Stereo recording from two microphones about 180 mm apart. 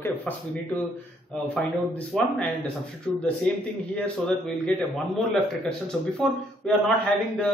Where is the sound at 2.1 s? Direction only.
Centre (ahead or behind).